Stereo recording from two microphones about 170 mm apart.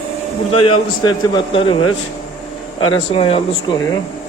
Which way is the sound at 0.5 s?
30° left (ahead or behind).